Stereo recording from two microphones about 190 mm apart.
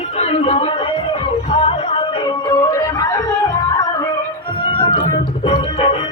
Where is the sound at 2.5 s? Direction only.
20° left (ahead or behind).